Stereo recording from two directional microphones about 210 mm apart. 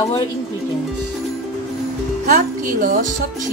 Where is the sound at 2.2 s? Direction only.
40° right (ahead or behind).